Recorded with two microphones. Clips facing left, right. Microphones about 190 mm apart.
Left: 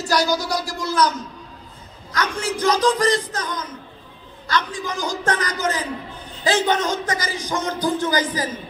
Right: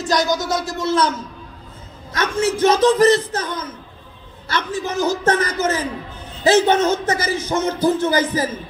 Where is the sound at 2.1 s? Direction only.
25° right (ahead or behind).